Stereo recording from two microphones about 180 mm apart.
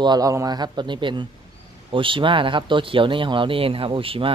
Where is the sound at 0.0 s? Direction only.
20° right (ahead or behind).